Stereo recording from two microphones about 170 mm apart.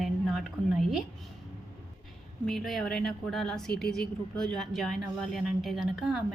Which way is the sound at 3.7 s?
70° left (ahead or behind).